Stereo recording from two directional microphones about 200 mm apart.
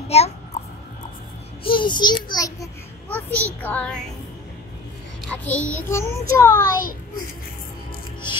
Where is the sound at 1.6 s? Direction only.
25° left (ahead or behind).